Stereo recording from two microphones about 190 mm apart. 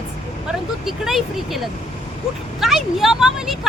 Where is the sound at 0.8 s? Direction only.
Centre (ahead or behind).